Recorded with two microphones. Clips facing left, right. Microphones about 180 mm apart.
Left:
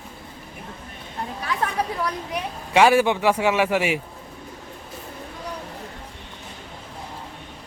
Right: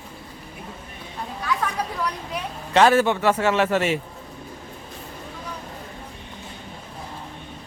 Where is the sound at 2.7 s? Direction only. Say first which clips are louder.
Even; 10° left (ahead or behind).